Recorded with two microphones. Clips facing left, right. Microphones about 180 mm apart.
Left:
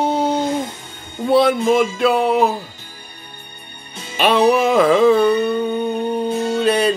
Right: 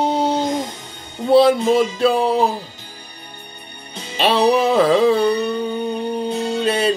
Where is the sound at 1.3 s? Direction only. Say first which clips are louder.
Right 1 dB; 30° right (ahead or behind).